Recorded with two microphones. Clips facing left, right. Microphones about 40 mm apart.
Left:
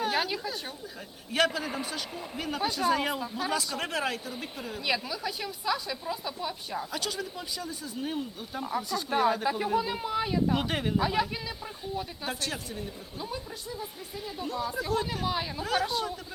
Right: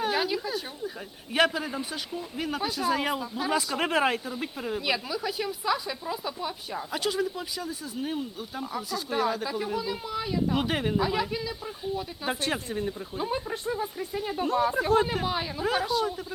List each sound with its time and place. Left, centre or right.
0.0 s speech: centre
2.4 s a woman's voice: centre
3.5 s speech: centre
3.8 s a woman's voice: right
4.9 s a woman's voice: centre
10.5 s a woman's voice: centre
12.3 s a woman's voice: right
12.7 s speech: right
15.0 s a woman's voice: right
15.3 s speech: centre
15.9 s a woman's voice: centre